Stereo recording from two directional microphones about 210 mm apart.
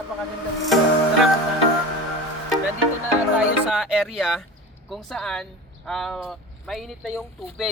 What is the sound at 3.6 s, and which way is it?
Speech, 5° right (ahead or behind).